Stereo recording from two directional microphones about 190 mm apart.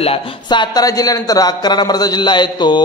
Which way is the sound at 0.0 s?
25° left (ahead or behind).